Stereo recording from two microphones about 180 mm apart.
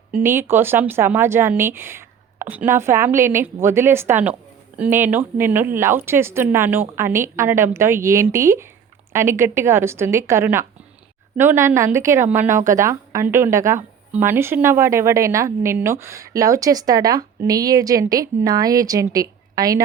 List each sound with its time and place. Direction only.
0.1 s a woman's voice: 15° right (ahead or behind)